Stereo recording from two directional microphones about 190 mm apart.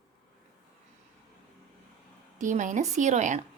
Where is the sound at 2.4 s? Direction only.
40° right (ahead or behind).